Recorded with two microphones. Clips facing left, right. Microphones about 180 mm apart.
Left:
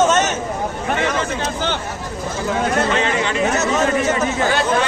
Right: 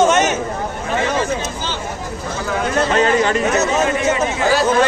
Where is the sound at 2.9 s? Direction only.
45° right (ahead or behind).